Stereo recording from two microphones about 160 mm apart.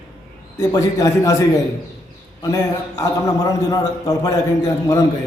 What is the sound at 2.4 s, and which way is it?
A man's voice, 20° left (ahead or behind).